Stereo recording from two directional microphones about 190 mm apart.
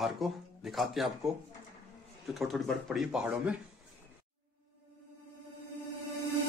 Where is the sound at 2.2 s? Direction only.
Centre (ahead or behind).